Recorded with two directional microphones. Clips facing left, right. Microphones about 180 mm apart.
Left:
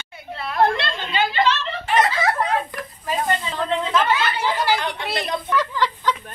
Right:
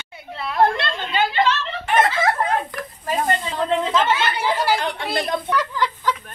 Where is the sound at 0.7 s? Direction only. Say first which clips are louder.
Right 1 dB; 50° right (ahead or behind).